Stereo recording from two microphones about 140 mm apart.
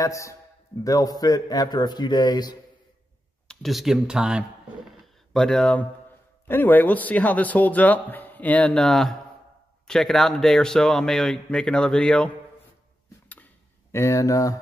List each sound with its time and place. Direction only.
0.0 s a man's voice: 20° left (ahead or behind)
3.4 s speech: centre (ahead or behind)
4.9 s a sound: centre (ahead or behind)
6.4 s speech: 15° left (ahead or behind)
13.9 s a man's voice: 20° left (ahead or behind)